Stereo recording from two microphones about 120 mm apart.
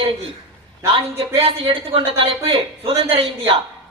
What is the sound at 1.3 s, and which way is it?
Speech, 50° right (ahead or behind).